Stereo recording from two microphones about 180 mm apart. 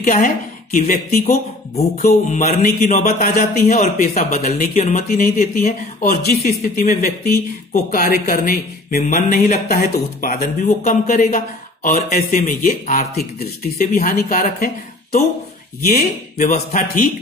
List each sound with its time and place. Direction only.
0.0 s speech: 45° left (ahead or behind)
6.4 s speech: 50° left (ahead or behind)
12.4 s speech: 45° left (ahead or behind)
15.9 s speech: 55° left (ahead or behind)